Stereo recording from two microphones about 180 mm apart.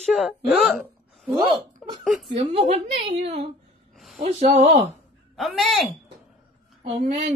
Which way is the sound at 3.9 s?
Centre (ahead or behind).